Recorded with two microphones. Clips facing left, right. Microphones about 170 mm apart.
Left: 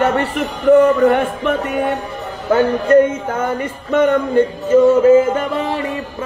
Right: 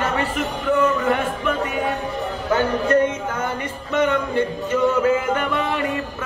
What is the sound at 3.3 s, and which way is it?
Music, 45° left (ahead or behind).